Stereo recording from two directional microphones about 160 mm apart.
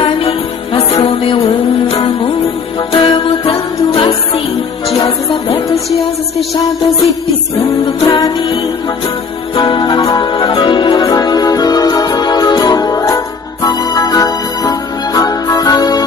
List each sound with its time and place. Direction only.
0.0 s music: 35° left (ahead or behind)
2.9 s music: 30° left (ahead or behind)
8.1 s music: 30° left (ahead or behind)
9.6 s music: 30° left (ahead or behind)